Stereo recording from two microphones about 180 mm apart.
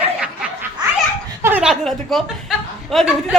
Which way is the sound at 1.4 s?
10° right (ahead or behind).